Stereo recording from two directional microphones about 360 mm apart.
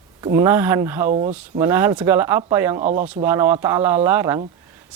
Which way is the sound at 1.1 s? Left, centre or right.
Centre.